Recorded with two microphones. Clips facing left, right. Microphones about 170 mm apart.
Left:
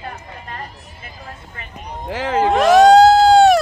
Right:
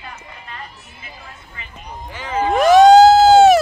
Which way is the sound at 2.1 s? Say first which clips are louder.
Left 4 dB; 80° left.